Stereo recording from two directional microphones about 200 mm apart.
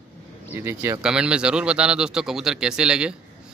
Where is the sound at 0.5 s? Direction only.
10° right (ahead or behind).